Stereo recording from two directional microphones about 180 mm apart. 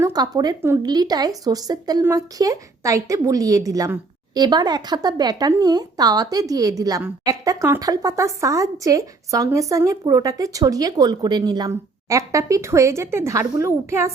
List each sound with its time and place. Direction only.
0.0 s a woman's voice: 20° right (ahead or behind)